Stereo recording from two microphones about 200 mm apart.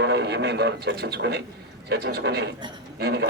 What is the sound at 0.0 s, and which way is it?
A man's voice, 55° right (ahead or behind).